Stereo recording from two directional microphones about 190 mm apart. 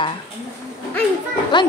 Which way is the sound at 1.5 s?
25° left (ahead or behind).